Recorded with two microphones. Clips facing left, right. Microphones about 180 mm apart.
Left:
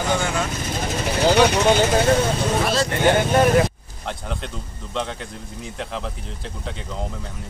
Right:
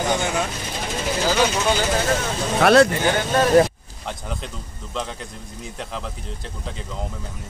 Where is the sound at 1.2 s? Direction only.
65° left (ahead or behind).